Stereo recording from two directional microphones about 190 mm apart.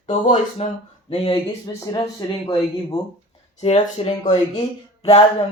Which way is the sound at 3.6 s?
35° left (ahead or behind).